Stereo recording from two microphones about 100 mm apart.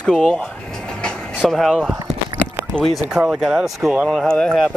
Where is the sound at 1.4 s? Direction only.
5° left (ahead or behind).